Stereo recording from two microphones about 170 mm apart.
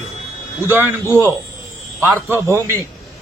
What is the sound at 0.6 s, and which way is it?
Speech, 10° right (ahead or behind).